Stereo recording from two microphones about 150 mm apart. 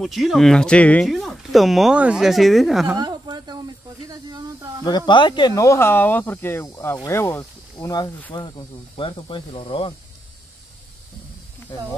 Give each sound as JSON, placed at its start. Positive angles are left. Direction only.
{"t": 0.0, "sound": "speech", "side_deg": 0}
{"t": 3.0, "sound": "a sound", "side_deg": -30}
{"t": 4.1, "sound": "snake", "side_deg": -25}
{"t": 4.8, "sound": "speech", "side_deg": 30}